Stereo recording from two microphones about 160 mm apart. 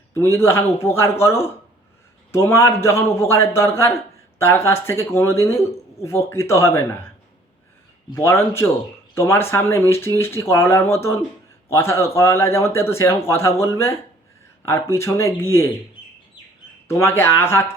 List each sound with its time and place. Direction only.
0.1 s a man's voice: 15° left (ahead or behind)
8.1 s a man's voice: 15° left (ahead or behind)
17.0 s a man's voice: 15° left (ahead or behind)